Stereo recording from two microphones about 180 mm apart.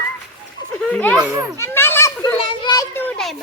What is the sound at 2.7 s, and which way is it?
Children playing, 10° left (ahead or behind).